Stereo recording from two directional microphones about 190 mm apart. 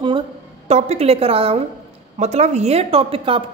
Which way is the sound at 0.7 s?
35° right (ahead or behind).